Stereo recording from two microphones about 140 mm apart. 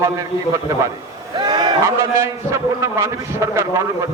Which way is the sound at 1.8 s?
20° right (ahead or behind).